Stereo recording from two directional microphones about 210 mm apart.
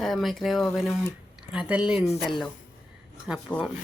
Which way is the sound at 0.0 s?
Centre (ahead or behind).